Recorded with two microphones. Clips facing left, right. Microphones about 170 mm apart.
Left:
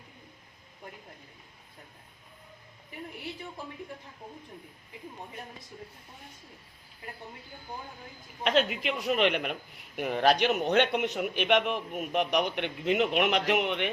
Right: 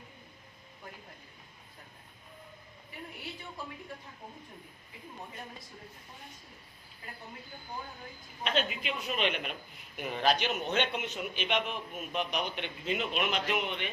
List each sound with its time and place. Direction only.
8.4 s a man's voice: 70° left (ahead or behind)